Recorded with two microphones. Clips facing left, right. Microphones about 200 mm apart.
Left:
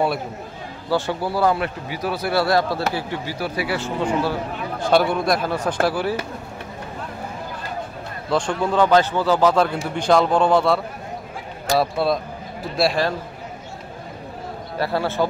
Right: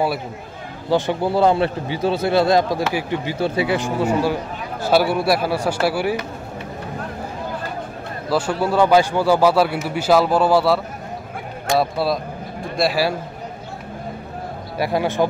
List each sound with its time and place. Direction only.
0.8 s a man's voice: 20° right (ahead or behind)
8.3 s a man's voice: 5° right (ahead or behind)
11.8 s speech: centre (ahead or behind)
14.8 s a man's voice: 15° right (ahead or behind)